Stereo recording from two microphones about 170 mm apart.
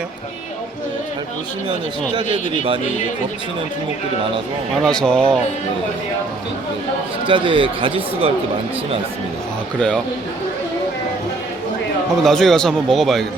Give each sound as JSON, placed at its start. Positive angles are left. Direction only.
{"t": 2.3, "sound": "speech", "side_deg": -30}
{"t": 4.7, "sound": "speech", "side_deg": 5}
{"t": 7.3, "sound": "speech", "side_deg": -30}
{"t": 12.2, "sound": "speech", "side_deg": 0}